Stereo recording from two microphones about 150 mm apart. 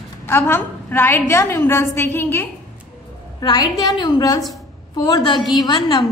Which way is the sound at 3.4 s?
30° left (ahead or behind).